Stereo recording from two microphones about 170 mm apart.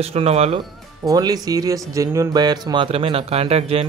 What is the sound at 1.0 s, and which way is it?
Speech, 20° right (ahead or behind).